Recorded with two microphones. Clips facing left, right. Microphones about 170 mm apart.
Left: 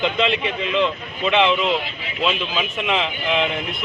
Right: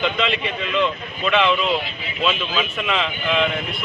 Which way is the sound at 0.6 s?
20° left (ahead or behind).